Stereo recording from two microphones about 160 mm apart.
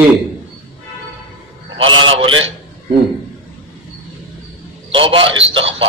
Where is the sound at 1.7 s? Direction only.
35° right (ahead or behind).